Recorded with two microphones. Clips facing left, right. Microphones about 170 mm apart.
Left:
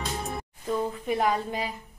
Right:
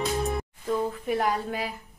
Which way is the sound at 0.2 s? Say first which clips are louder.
Right 5 dB; centre (ahead or behind).